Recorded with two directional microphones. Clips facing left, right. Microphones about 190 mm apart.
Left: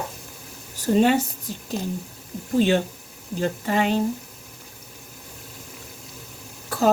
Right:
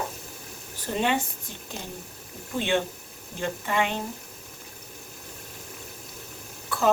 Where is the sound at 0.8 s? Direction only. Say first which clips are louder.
Left 8 dB; 40° left (ahead or behind).